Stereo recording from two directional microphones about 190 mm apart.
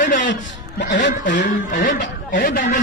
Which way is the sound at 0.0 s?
45° left (ahead or behind).